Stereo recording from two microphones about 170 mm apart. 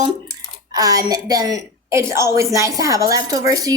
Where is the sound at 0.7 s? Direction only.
20° right (ahead or behind).